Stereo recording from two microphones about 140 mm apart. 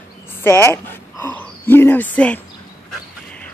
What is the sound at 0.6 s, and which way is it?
Speech, 15° left (ahead or behind).